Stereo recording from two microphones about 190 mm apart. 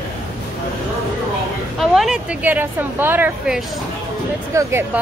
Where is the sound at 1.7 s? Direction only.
Centre (ahead or behind).